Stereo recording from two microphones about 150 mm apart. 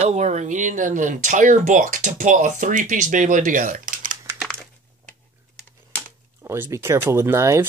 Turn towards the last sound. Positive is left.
turn(degrees=-20)  # may be behind; listen again after turning